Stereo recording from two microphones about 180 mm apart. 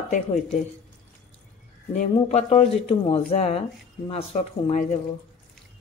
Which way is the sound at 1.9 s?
40° left (ahead or behind).